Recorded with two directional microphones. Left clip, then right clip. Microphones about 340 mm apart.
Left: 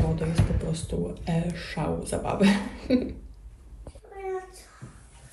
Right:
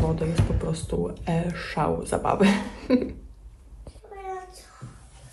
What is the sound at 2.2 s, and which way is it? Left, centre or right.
Speech, right.